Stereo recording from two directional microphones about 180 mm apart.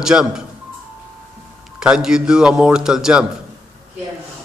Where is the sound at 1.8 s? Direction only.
5° right (ahead or behind).